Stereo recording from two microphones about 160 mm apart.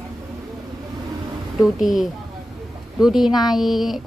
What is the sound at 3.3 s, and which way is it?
Speech, 25° left (ahead or behind).